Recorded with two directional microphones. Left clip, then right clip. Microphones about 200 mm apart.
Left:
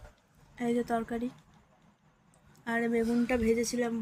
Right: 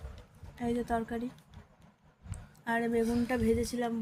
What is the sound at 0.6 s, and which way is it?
Speech, 10° left (ahead or behind).